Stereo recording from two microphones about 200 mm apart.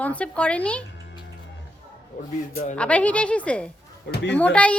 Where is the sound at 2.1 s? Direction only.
40° left (ahead or behind).